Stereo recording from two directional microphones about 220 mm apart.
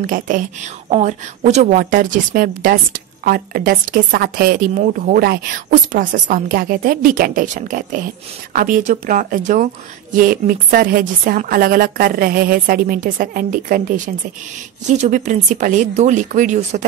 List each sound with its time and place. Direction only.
0.0 s a woman's voice: 40° right (ahead or behind)